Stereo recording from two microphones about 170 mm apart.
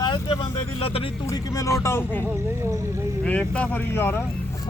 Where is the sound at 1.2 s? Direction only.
20° left (ahead or behind).